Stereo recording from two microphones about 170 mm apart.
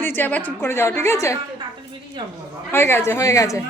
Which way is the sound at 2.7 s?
15° left (ahead or behind).